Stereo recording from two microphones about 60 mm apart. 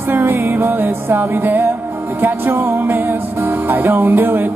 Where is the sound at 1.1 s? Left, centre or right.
Right.